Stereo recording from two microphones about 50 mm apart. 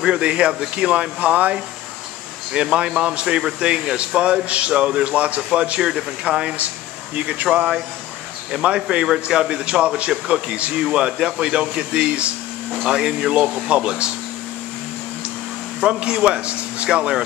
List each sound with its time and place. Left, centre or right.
0.0 s a man's voice: centre
8.5 s a man's voice: centre
15.8 s a man's voice: centre